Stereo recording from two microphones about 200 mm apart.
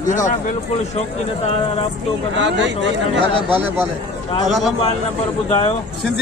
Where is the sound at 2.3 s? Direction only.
65° right (ahead or behind).